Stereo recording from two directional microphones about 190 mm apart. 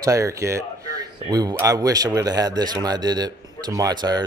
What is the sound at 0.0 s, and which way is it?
Speech, 15° right (ahead or behind).